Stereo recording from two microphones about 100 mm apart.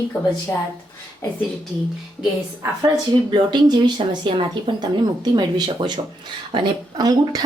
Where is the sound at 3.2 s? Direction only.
45° right (ahead or behind).